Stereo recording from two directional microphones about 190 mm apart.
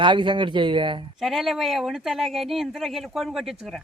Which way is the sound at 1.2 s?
Centre (ahead or behind).